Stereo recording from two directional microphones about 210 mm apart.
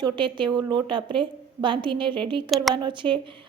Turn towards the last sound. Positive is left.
turn(degrees=-25)  # may be behind; listen again after turning